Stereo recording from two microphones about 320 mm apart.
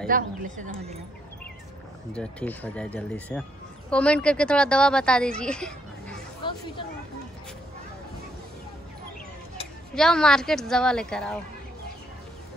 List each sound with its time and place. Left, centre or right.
0.0 s a woman's voice: right
2.1 s a woman's voice: centre
6.4 s a sound: centre
9.9 s a woman's voice: centre